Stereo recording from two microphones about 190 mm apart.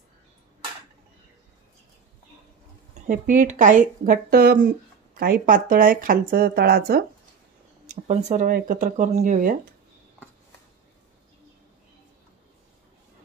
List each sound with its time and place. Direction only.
3.1 s speech: 45° right (ahead or behind)
7.8 s speech: 40° right (ahead or behind)